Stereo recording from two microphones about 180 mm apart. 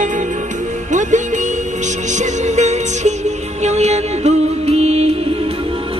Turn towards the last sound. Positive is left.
turn(degrees=-35)  # may be behind; listen again after turning